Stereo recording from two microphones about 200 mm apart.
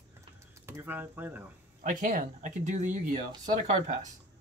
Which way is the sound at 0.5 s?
10° right (ahead or behind).